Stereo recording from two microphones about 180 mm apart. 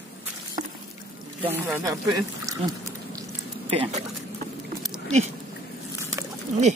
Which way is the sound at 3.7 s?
35° right (ahead or behind).